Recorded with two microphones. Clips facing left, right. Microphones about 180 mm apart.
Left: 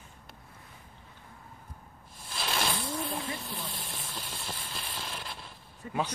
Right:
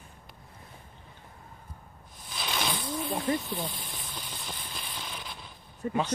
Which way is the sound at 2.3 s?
Centre (ahead or behind).